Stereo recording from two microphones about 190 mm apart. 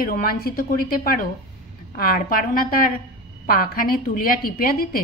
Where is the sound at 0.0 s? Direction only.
50° left (ahead or behind).